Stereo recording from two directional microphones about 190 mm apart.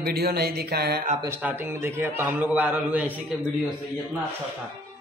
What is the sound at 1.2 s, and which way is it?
A man's voice, 15° right (ahead or behind).